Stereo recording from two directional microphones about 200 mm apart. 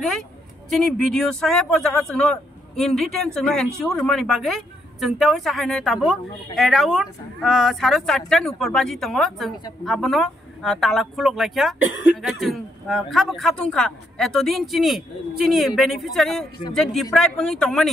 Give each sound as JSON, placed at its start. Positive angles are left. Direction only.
{"t": 0.7, "sound": "speech", "side_deg": 0}